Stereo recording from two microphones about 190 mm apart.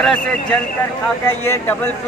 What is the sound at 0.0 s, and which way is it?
A man's voice, 5° left (ahead or behind).